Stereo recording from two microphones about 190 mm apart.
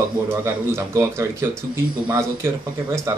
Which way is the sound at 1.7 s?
15° right (ahead or behind).